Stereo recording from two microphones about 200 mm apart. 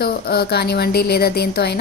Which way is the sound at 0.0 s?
50° left (ahead or behind).